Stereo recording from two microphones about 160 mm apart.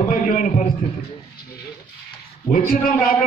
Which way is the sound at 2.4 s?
60° left (ahead or behind).